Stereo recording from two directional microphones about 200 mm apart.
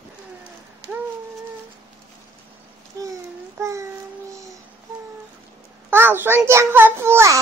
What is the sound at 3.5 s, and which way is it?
Babbling, 15° right (ahead or behind).